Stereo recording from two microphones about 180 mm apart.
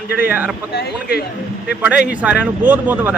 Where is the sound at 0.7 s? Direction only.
60° left (ahead or behind).